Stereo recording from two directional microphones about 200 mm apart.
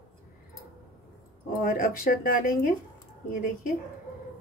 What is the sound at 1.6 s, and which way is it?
A woman's voice, 45° left (ahead or behind).